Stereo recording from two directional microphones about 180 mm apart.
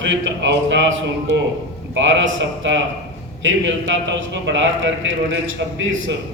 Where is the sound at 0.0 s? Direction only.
90° right.